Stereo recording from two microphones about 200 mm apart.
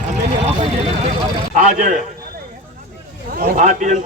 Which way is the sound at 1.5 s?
40° right (ahead or behind).